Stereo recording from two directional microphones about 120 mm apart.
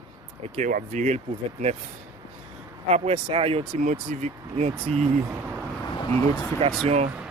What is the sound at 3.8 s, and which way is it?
Speech, 90° right.